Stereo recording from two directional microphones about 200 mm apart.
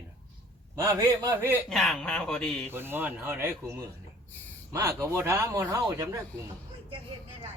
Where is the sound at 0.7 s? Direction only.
15° right (ahead or behind).